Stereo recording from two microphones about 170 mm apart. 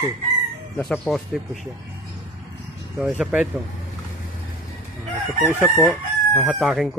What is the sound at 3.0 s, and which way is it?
Speech, 5° right (ahead or behind).